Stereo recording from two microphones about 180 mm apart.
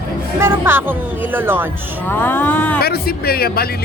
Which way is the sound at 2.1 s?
10° left (ahead or behind).